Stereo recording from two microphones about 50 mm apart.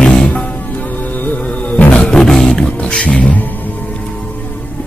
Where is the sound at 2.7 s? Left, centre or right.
Left.